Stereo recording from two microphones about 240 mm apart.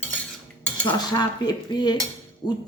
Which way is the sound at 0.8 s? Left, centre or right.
Centre.